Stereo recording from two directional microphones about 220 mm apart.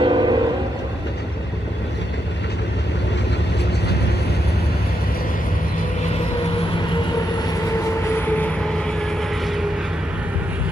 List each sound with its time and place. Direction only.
0.0 s vehicle: 20° right (ahead or behind)